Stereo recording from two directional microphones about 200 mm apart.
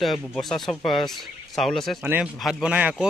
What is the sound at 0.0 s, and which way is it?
Speech, centre (ahead or behind).